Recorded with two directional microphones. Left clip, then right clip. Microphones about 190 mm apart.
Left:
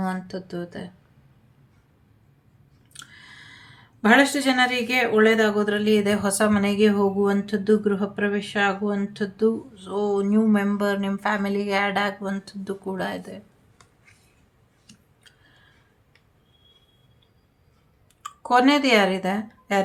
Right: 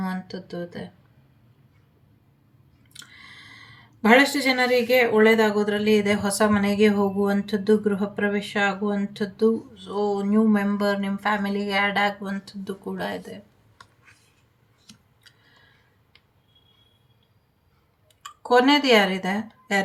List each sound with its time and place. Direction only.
0.0 s speech: 35° left (ahead or behind)
2.9 s speech: 35° left (ahead or behind)
18.2 s speech: 35° left (ahead or behind)